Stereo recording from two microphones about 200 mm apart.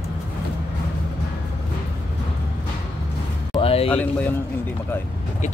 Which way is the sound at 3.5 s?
30° left (ahead or behind).